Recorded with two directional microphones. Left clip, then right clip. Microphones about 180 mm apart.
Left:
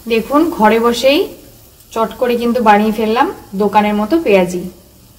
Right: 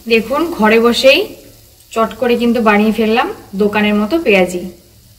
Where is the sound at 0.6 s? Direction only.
55° left (ahead or behind).